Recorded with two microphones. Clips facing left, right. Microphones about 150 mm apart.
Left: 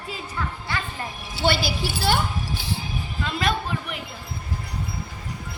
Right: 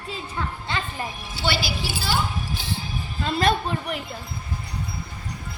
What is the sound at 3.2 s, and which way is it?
Speech, 40° right (ahead or behind).